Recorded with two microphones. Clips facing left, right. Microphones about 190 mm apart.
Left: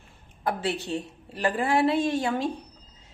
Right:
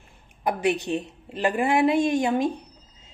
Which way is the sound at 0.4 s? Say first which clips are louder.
Right 4 dB; 15° right (ahead or behind).